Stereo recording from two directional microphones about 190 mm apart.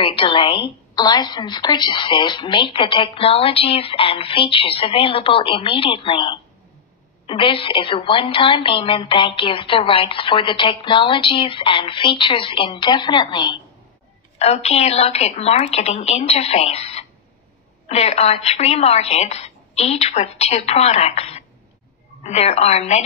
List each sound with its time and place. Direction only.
0.0 s a woman's voice: 25° left (ahead or behind)
14.4 s a woman's voice: 35° left (ahead or behind)